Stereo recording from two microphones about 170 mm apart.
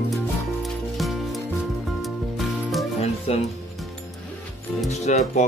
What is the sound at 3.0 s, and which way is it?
Music, 35° left (ahead or behind).